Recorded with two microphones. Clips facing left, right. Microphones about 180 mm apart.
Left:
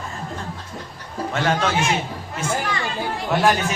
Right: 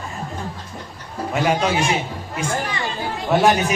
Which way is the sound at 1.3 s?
15° right (ahead or behind).